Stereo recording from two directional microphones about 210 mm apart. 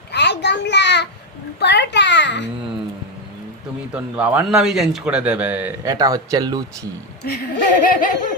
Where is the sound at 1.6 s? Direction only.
55° left (ahead or behind).